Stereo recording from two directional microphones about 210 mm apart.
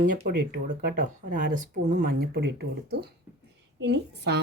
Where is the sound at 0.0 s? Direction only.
40° right (ahead or behind).